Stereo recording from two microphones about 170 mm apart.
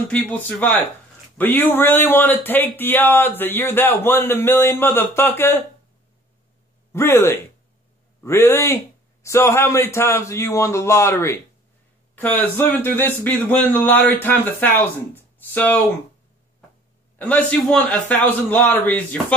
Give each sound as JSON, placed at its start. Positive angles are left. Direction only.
{"t": 0.1, "sound": "speech", "side_deg": 10}
{"t": 6.9, "sound": "speech", "side_deg": 15}
{"t": 17.2, "sound": "speech", "side_deg": 5}